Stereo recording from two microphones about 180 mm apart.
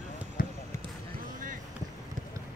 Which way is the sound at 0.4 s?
50° left (ahead or behind).